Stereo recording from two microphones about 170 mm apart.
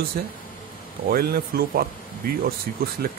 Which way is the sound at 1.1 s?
65° right (ahead or behind).